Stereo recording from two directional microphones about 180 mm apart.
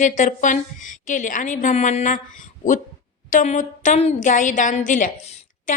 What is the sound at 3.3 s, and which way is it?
Speech, 45° left (ahead or behind).